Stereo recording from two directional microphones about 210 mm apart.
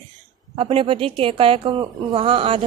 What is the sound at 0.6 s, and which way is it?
A woman's voice, 25° right (ahead or behind).